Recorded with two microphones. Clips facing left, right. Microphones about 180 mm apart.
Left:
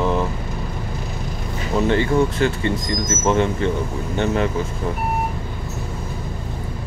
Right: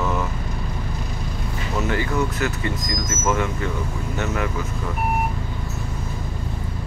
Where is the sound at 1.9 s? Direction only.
30° left (ahead or behind).